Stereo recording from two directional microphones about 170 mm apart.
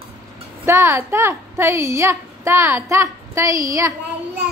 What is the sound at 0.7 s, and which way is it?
A woman's voice, 15° right (ahead or behind).